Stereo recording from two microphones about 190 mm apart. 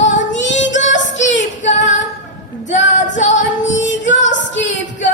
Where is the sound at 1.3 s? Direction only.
75° left (ahead or behind).